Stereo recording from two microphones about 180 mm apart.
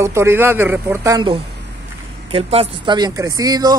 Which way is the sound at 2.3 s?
30° right (ahead or behind).